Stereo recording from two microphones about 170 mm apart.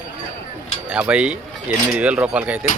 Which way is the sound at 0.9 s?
5° right (ahead or behind).